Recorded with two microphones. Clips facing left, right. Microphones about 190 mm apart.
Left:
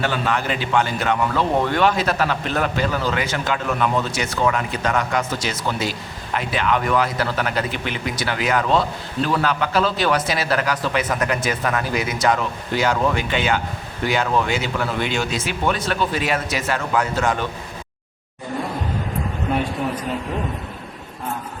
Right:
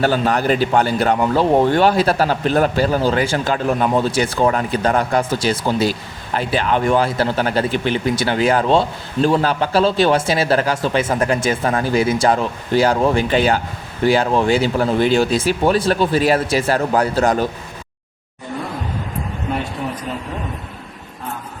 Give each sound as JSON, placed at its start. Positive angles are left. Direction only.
{"t": 0.0, "sound": "a man's voice", "side_deg": -40}